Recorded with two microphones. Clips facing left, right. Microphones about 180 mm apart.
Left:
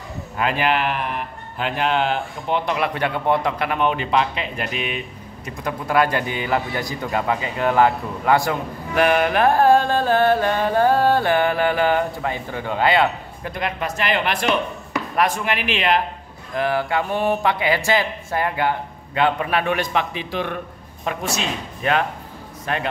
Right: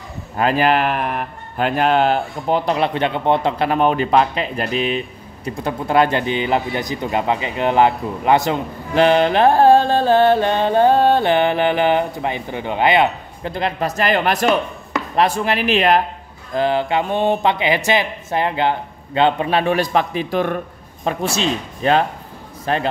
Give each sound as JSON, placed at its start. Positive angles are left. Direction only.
{"t": 0.4, "sound": "speech", "side_deg": -40}
{"t": 15.1, "sound": "speech", "side_deg": -30}
{"t": 16.5, "sound": "speech", "side_deg": -25}
{"t": 21.0, "sound": "speech", "side_deg": -30}